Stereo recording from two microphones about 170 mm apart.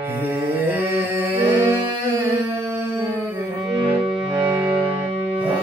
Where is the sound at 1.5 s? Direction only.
15° right (ahead or behind).